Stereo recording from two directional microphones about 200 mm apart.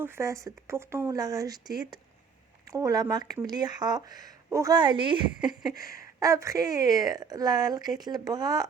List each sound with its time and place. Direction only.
0.0 s speech: 15° right (ahead or behind)
5.7 s a sound: 45° left (ahead or behind)
6.1 s speech: 15° right (ahead or behind)